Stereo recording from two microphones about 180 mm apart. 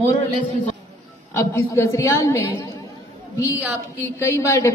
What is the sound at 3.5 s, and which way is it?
Speech, 15° right (ahead or behind).